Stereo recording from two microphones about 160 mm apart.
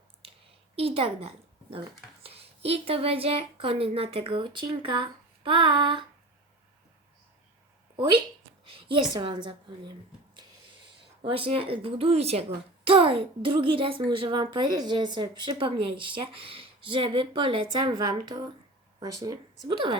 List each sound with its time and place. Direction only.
0.8 s a woman's voice: 35° right (ahead or behind)
7.9 s a woman's voice: 30° right (ahead or behind)
11.2 s a woman's voice: 35° right (ahead or behind)